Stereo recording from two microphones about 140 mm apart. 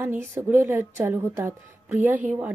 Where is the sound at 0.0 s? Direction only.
15° right (ahead or behind).